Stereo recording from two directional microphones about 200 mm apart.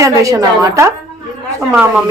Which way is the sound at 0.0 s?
15° right (ahead or behind).